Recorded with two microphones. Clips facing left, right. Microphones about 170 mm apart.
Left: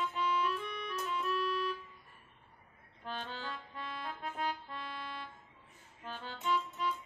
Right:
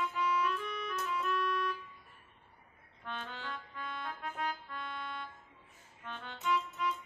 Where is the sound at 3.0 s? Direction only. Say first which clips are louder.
Left 1 dB; 30° left (ahead or behind).